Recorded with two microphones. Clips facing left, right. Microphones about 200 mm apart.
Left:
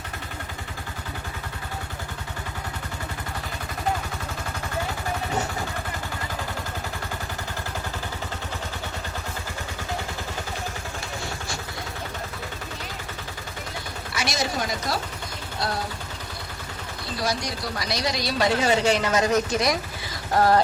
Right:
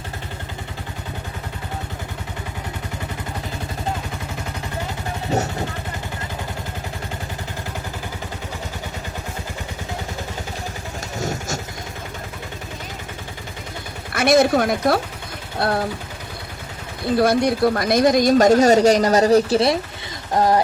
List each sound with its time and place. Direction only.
11.2 s vehicle: 45° right (ahead or behind)
14.1 s speech: 55° right (ahead or behind)
17.2 s speech: 55° right (ahead or behind); by 19.8 s 30° right (ahead or behind)
20.3 s speech: 15° right (ahead or behind)